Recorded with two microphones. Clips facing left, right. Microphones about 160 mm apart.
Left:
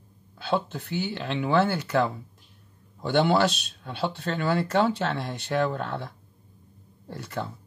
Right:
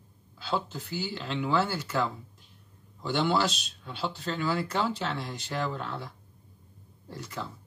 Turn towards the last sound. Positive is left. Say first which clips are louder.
# left 5 dB
turn(degrees=60)  # may be behind; listen again after turning